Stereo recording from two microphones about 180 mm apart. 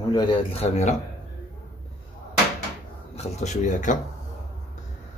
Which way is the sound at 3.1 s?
40° left (ahead or behind).